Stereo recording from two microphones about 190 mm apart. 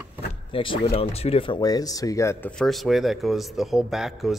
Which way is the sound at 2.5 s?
Centre (ahead or behind).